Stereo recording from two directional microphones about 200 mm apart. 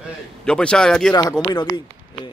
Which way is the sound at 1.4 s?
20° left (ahead or behind).